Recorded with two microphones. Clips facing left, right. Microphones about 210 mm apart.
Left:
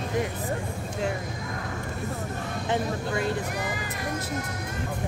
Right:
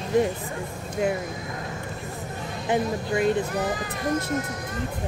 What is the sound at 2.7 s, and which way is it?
Speech, 15° right (ahead or behind).